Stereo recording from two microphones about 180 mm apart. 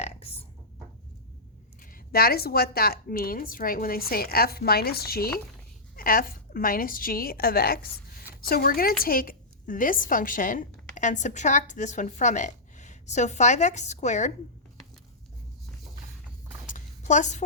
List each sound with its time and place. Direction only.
0.0 s burping: 35° left (ahead or behind)
1.8 s a woman's voice: 55° left (ahead or behind)
16.6 s a sound: 45° left (ahead or behind)